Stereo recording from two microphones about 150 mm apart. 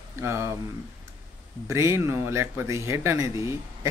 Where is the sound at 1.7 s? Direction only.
20° right (ahead or behind).